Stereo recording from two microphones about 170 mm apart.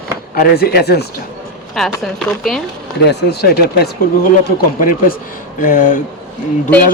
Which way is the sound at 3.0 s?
75° left (ahead or behind).